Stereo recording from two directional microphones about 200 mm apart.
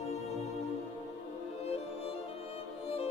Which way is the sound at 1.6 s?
30° left (ahead or behind).